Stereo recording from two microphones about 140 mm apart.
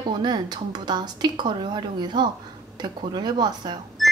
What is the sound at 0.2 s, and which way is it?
Speech, 30° right (ahead or behind).